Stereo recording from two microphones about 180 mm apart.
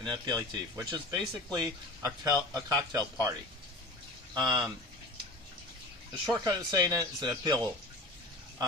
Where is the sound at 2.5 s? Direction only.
20° right (ahead or behind).